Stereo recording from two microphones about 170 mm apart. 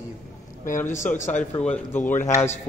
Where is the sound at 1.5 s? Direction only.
10° left (ahead or behind).